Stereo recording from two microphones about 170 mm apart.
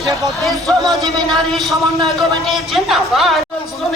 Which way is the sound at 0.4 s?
Centre (ahead or behind).